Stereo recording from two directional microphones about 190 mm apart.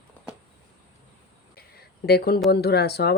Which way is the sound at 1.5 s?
55° left (ahead or behind).